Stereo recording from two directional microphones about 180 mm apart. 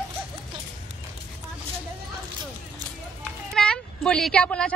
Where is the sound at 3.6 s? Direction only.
5° left (ahead or behind).